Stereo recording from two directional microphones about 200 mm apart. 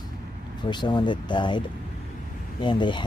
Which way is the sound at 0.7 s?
20° left (ahead or behind).